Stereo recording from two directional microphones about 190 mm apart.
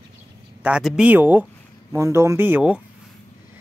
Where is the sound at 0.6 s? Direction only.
5° right (ahead or behind).